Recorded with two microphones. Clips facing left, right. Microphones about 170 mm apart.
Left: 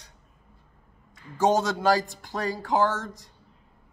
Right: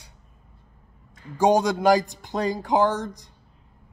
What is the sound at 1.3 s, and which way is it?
A man's voice, 15° right (ahead or behind).